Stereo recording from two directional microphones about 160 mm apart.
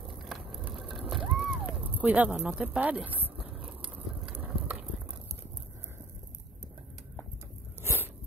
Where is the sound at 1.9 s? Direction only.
10° right (ahead or behind).